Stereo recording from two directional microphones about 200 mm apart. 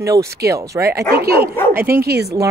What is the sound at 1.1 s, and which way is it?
Speech, 50° right (ahead or behind).